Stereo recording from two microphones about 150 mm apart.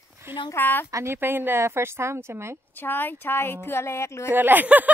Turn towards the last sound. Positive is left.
turn(degrees=-10)  # may be behind; listen again after turning